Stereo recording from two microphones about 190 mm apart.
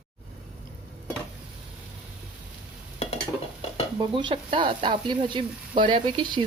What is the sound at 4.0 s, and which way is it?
Sizzle, 25° right (ahead or behind).